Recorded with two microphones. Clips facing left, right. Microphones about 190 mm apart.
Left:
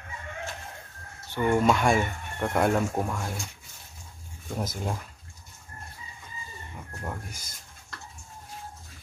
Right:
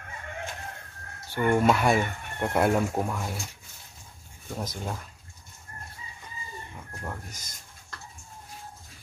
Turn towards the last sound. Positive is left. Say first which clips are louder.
# even
turn(degrees=5)  # may be behind; listen again after turning